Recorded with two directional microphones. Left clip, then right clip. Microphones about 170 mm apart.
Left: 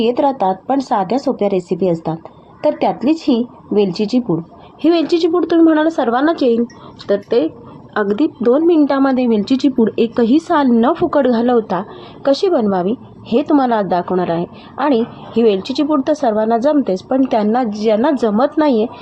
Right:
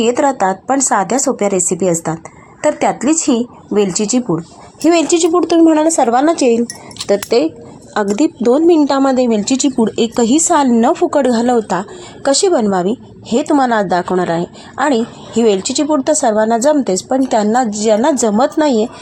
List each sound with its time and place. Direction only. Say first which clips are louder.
0.1 s a woman's voice: right 2 dB; 15° right (ahead or behind)
2.8 s a woman's voice: right 2 dB; 10° right (ahead or behind)
6.3 s speech: right 2 dB; 50° right (ahead or behind)
7.1 s a woman's voice: right 2 dB; 20° right (ahead or behind)